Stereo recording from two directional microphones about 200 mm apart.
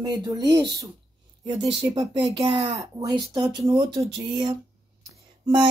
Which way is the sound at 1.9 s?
25° right (ahead or behind).